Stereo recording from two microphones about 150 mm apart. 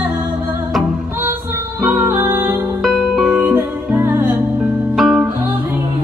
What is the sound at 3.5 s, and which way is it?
Music, 15° right (ahead or behind).